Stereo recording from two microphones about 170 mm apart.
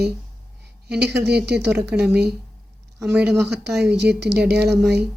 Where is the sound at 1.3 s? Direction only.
75° right (ahead or behind).